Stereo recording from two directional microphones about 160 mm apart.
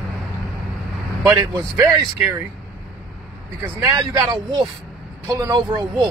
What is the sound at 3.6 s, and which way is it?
Speech, 25° right (ahead or behind).